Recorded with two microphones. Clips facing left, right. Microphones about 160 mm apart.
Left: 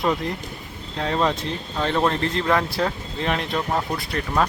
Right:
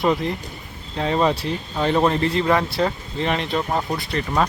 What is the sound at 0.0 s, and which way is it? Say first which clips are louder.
Speech: right 3 dB; centre (ahead or behind).